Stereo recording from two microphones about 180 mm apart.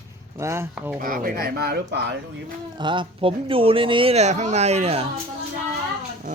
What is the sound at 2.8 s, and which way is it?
Speech, 25° right (ahead or behind).